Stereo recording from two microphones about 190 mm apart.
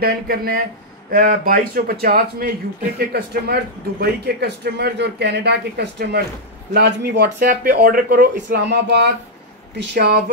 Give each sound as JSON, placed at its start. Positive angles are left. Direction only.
{"t": 0.0, "sound": "a man's voice", "side_deg": -50}
{"t": 7.3, "sound": "a man's voice", "side_deg": -45}